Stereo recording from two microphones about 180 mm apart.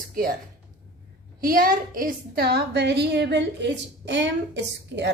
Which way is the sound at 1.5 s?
50° right (ahead or behind).